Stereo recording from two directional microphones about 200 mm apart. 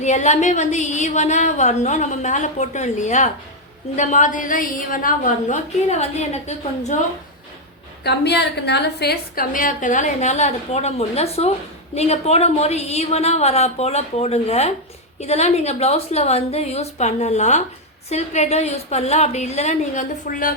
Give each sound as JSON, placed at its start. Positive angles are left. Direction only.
{"t": 0.0, "sound": "a woman's voice", "side_deg": 35}
{"t": 8.0, "sound": "a woman's voice", "side_deg": 55}